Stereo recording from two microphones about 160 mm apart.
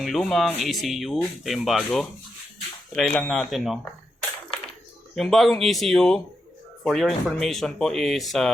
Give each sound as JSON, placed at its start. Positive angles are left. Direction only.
{"t": 0.0, "sound": "speech", "side_deg": 0}
{"t": 5.1, "sound": "speech", "side_deg": 0}